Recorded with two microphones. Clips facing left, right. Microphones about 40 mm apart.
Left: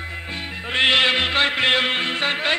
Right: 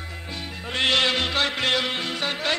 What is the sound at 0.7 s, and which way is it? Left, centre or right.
Music, left.